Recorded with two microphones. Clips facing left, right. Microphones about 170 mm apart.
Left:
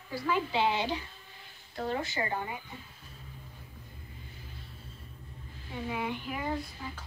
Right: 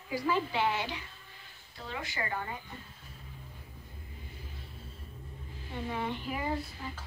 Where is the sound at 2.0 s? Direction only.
25° left (ahead or behind).